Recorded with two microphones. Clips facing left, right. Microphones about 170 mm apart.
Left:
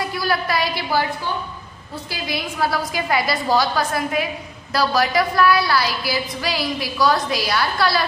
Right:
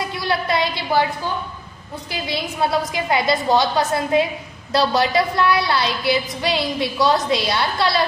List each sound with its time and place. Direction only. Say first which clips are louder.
0.0 s a woman's voice: even; 25° right (ahead or behind)
2.0 s a woman's voice: right 2 dB; 25° right (ahead or behind)